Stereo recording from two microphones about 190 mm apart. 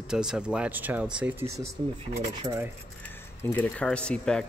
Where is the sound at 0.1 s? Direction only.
5° right (ahead or behind).